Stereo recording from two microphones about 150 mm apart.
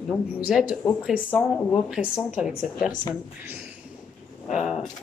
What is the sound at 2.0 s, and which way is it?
Speech, 5° right (ahead or behind).